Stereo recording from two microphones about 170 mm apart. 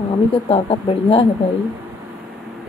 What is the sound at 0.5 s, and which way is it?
Speech, 35° left (ahead or behind).